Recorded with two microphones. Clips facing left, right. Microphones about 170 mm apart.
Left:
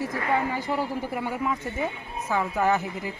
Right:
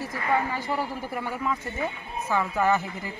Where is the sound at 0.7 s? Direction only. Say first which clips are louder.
Left 1 dB; 20° left (ahead or behind).